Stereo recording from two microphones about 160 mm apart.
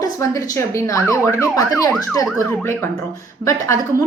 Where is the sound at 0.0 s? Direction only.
20° left (ahead or behind).